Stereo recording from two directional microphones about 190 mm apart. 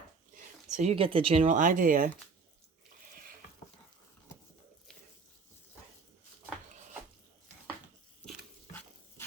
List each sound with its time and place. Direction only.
0.3 s speech: 35° right (ahead or behind)